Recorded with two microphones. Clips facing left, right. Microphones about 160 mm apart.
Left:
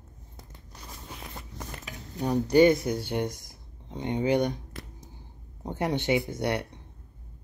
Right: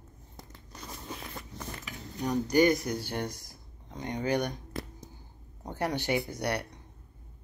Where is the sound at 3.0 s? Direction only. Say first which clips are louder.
Left 5 dB; 20° left (ahead or behind).